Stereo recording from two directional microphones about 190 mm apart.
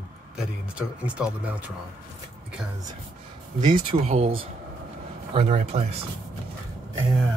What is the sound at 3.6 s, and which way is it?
Speech, 25° right (ahead or behind).